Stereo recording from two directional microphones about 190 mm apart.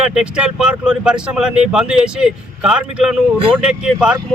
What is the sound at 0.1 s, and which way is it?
Speech, 5° right (ahead or behind).